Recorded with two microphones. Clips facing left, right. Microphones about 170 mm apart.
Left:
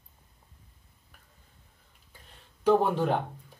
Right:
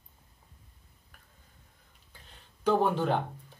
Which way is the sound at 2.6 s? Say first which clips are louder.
Left 3 dB; 5° left (ahead or behind).